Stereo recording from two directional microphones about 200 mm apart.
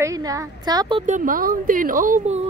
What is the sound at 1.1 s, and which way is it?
Speech, 45° right (ahead or behind).